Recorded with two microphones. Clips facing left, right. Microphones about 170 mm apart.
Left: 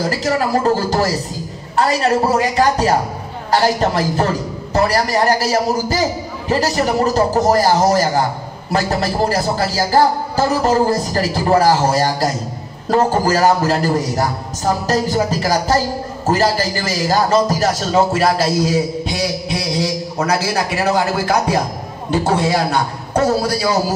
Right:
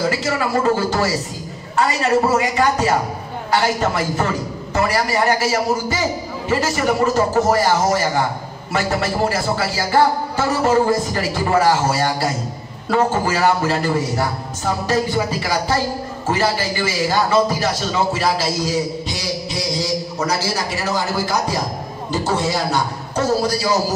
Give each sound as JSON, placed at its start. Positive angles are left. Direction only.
{"t": 0.0, "sound": "a man's voice", "side_deg": 40}